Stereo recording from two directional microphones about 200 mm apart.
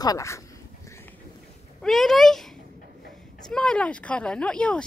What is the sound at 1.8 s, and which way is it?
Speech, centre (ahead or behind).